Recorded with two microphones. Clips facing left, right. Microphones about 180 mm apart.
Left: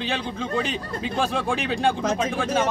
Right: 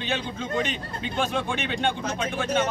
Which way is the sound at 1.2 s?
35° left (ahead or behind).